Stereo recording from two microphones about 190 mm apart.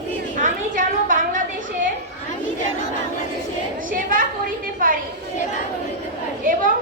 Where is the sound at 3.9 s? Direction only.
45° right (ahead or behind).